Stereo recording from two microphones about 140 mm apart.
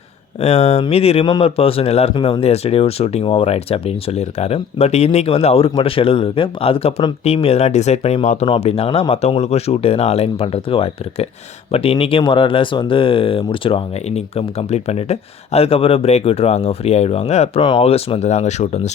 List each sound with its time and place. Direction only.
0.3 s speech: 50° left (ahead or behind)
2.1 s speech: 30° left (ahead or behind)
2.4 s speech: 45° left (ahead or behind)
8.4 s speech: 40° left (ahead or behind)
17.6 s speech: 35° left (ahead or behind)
17.8 s speech: 45° left (ahead or behind)